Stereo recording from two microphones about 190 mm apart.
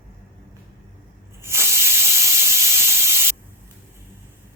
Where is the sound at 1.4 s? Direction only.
15° right (ahead or behind).